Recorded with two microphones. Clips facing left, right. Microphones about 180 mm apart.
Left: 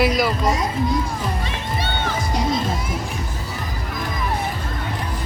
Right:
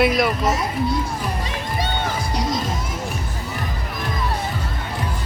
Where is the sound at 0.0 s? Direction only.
Centre (ahead or behind).